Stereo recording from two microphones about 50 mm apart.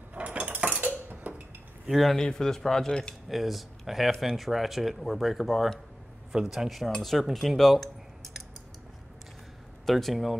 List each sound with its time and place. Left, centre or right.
0.1 s a sound: right
1.3 s dishes: right
1.9 s speech: centre
2.1 s speech: centre
3.3 s speech: centre
7.3 s cutlery: centre
9.8 s speech: centre